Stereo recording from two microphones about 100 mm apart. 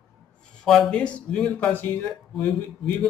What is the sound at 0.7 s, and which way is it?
Speech, 5° left (ahead or behind).